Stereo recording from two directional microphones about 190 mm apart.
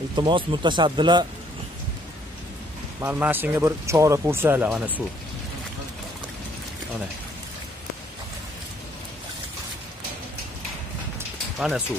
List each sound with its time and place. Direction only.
0.1 s speech: 25° right (ahead or behind)
3.0 s speech: 10° right (ahead or behind)
11.5 s speech: centre (ahead or behind)